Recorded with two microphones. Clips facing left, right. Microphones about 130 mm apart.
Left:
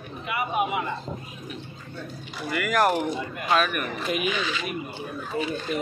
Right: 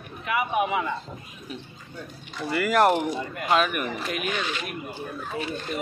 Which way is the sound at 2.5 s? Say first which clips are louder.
Right 2 dB; 30° right (ahead or behind).